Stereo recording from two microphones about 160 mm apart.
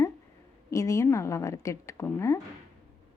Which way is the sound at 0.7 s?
20° left (ahead or behind).